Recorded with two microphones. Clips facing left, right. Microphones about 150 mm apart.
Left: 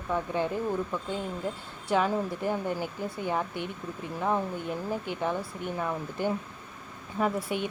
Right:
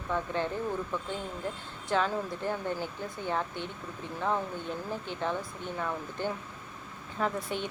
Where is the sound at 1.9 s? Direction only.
15° left (ahead or behind).